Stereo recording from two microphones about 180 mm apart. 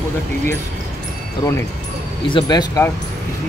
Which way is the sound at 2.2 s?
25° left (ahead or behind).